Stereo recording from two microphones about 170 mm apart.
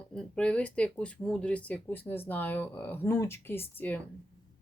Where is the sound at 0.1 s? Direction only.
5° left (ahead or behind).